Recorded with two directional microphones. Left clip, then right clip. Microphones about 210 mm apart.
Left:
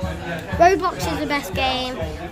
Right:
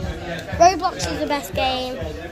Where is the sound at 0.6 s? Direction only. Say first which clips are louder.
Even; 20° left (ahead or behind).